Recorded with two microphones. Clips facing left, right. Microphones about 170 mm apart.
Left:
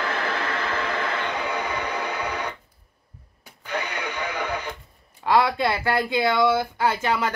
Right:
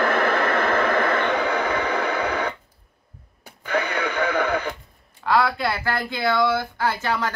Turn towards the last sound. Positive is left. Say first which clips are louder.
# left 1 dB
turn(degrees=20)  # may be behind; listen again after turning